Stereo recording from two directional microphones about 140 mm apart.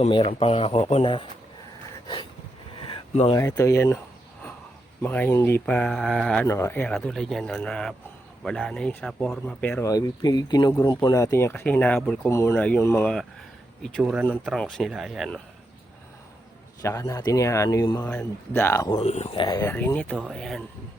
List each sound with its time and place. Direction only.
0.3 s speech: 45° left (ahead or behind)
2.7 s a sound: 40° left (ahead or behind)
3.3 s speech: 20° left (ahead or behind)
5.0 s speech: 15° left (ahead or behind)
6.9 s a man's voice: 5° left (ahead or behind)
9.8 s speech: 25° left (ahead or behind); by 12.3 s 5° left (ahead or behind)
12.3 s speech: 20° left (ahead or behind)
13.8 s a man's voice: centre (ahead or behind)
16.8 s speech: 20° left (ahead or behind)
18.0 s speech: 10° left (ahead or behind)
18.9 s speech: 50° left (ahead or behind); by 19.6 s 35° left (ahead or behind)
19.6 s speech: 10° left (ahead or behind)